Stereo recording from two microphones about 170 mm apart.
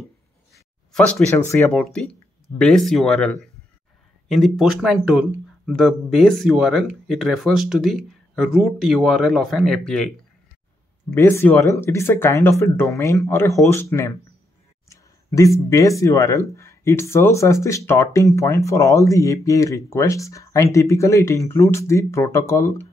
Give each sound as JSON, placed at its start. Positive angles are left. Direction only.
{"t": 0.5, "sound": "a sound", "side_deg": 0}
{"t": 1.7, "sound": "speech", "side_deg": 5}
{"t": 11.1, "sound": "speech", "side_deg": 15}